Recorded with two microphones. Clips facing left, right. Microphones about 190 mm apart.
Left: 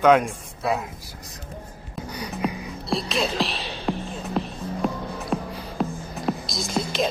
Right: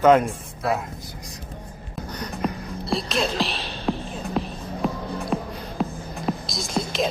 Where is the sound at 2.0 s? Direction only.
10° left (ahead or behind).